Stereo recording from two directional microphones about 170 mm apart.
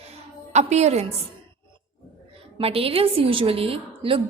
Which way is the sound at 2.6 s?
35° right (ahead or behind).